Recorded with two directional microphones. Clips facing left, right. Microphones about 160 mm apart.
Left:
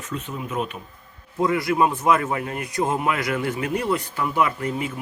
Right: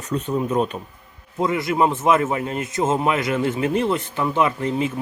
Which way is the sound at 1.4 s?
20° right (ahead or behind).